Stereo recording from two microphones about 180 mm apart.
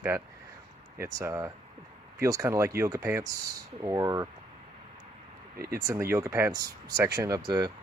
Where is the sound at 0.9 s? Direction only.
15° right (ahead or behind).